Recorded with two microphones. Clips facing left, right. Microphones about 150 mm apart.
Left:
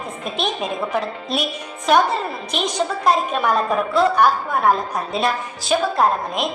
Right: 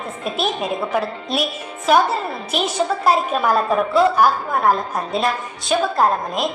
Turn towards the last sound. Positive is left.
turn(degrees=0)  # may be behind; listen again after turning